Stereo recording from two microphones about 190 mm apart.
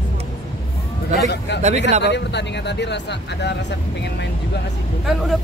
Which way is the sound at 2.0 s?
65° left (ahead or behind).